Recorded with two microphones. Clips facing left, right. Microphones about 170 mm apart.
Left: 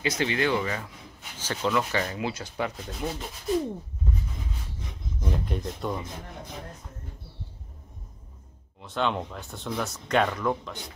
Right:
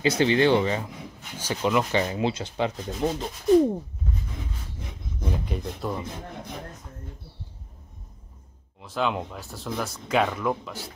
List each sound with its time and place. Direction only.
0.0 s rub: 30° right (ahead or behind)
1.4 s rub: 15° right (ahead or behind)
5.2 s speech: centre (ahead or behind)
8.8 s speech: 5° right (ahead or behind)